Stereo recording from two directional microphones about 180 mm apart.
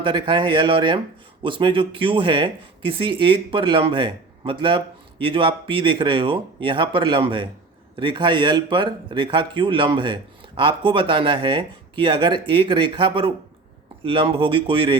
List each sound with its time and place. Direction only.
0.0 s speech: 25° right (ahead or behind)